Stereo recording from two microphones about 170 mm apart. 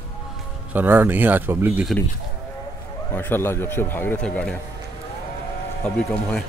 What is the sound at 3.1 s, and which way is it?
A man's voice, 10° left (ahead or behind).